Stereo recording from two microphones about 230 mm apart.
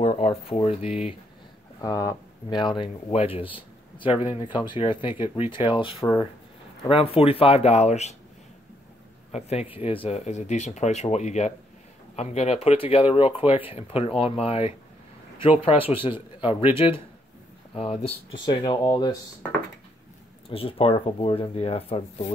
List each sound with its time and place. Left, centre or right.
0.0 s speech: left
1.8 s speech: centre
9.3 s speech: left